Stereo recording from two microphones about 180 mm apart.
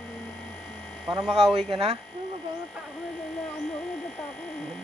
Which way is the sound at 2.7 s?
Centre (ahead or behind).